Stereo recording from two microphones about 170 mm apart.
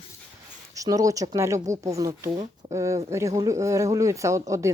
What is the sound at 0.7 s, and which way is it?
Speech, 20° right (ahead or behind).